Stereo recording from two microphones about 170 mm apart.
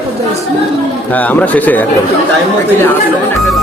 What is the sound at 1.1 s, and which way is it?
Speech, 10° left (ahead or behind).